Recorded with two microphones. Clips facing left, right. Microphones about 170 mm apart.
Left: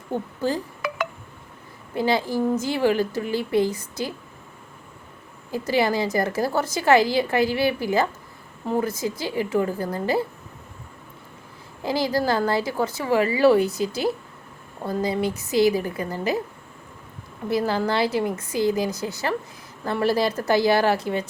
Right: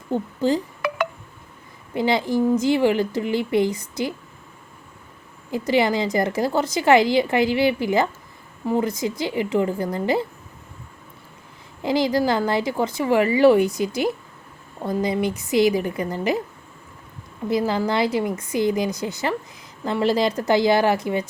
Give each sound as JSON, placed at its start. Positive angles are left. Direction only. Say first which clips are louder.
{"t": 0.1, "sound": "speech", "louder": "right 4 dB", "side_deg": -15}
{"t": 2.0, "sound": "a woman's voice", "louder": "right 2 dB", "side_deg": -15}
{"t": 5.5, "sound": "a woman's voice", "louder": "right 2 dB", "side_deg": -20}
{"t": 11.8, "sound": "a woman's voice", "louder": "right 3 dB", "side_deg": -20}
{"t": 17.5, "sound": "a woman's voice", "louder": "right 1 dB", "side_deg": -15}